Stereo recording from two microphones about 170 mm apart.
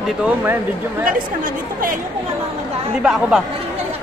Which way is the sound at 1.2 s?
55° right (ahead or behind).